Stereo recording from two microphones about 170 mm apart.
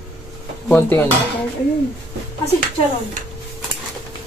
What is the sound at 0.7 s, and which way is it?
Stir, 10° left (ahead or behind).